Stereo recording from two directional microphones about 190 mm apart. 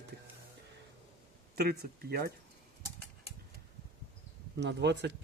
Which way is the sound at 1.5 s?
55° right (ahead or behind).